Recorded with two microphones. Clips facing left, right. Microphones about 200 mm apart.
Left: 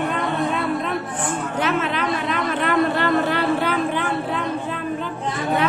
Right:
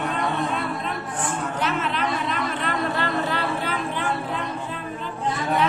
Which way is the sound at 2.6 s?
60° left (ahead or behind).